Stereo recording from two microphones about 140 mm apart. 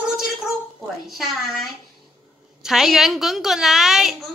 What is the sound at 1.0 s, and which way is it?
Speech, centre (ahead or behind).